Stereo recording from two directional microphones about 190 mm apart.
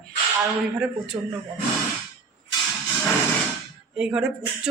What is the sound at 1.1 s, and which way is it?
Speech, 15° right (ahead or behind).